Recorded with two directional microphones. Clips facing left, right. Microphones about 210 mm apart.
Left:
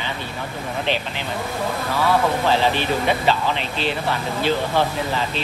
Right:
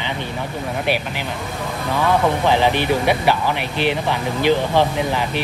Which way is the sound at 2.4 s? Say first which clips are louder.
Right 3 dB; 15° right (ahead or behind).